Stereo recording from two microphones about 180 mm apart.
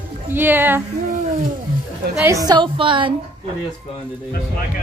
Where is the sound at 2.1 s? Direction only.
15° right (ahead or behind).